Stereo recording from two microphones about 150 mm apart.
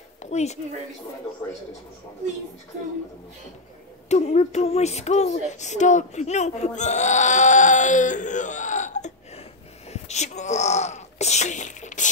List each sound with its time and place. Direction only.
0.2 s speech: 50° left (ahead or behind)
4.1 s speech: 45° left (ahead or behind)